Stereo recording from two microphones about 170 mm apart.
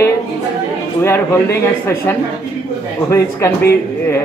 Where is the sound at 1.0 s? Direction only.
15° left (ahead or behind).